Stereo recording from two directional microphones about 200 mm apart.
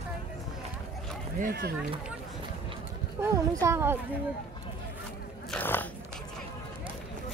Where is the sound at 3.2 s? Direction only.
15° right (ahead or behind).